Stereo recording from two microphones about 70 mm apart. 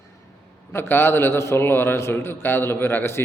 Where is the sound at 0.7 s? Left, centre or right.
Left.